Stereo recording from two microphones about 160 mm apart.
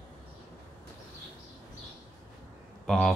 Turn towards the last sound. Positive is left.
turn(degrees=5)  # may be behind; listen again after turning